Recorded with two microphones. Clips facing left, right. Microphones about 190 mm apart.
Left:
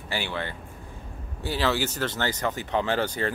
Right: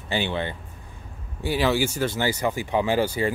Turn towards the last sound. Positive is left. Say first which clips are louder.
# right 4 dB
turn(degrees=-10)  # may be behind; listen again after turning